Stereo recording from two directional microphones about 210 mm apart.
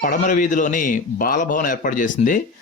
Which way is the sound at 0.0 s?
40° left (ahead or behind).